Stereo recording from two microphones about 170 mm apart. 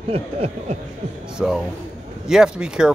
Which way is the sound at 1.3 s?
5° right (ahead or behind).